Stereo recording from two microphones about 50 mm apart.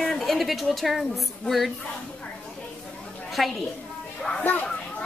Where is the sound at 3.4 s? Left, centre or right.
Centre.